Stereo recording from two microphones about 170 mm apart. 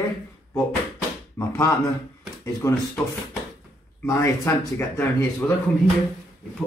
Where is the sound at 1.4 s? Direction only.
15° left (ahead or behind).